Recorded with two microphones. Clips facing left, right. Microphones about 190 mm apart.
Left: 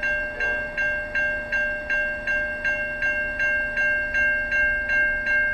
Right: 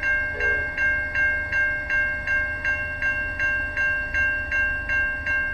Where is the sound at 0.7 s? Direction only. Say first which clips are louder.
Left 3 dB; 60° left (ahead or behind).